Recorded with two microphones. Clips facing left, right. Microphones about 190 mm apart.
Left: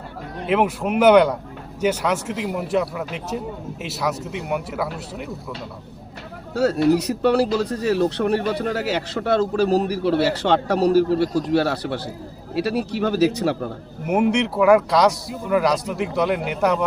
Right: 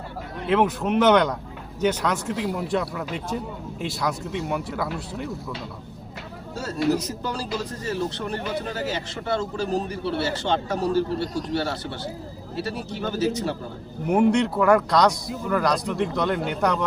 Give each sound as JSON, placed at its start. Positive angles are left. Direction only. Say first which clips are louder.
{"t": 0.4, "sound": "speech", "louder": "left 1 dB", "side_deg": 10}
{"t": 6.5, "sound": "speech", "louder": "left 6 dB", "side_deg": 65}
{"t": 14.1, "sound": "speech", "louder": "even", "side_deg": 5}